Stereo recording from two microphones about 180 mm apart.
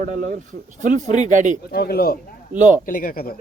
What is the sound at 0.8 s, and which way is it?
Speech, 45° right (ahead or behind).